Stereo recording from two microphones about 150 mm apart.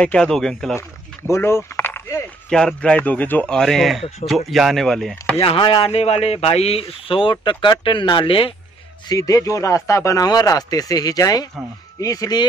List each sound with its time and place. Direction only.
0.0 s speech: 5° left (ahead or behind)
1.3 s speech: 15° left (ahead or behind)
2.5 s speech: 5° left (ahead or behind)
5.4 s speech: 35° left (ahead or behind)
9.1 s speech: 25° left (ahead or behind)